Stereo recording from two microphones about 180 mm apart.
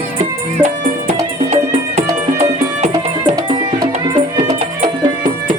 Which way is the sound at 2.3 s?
40° right (ahead or behind).